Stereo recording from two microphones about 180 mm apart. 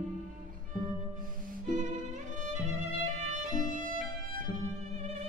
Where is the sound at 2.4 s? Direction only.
40° right (ahead or behind).